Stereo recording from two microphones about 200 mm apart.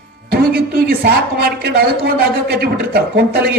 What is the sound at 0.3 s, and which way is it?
A man's voice, 50° right (ahead or behind).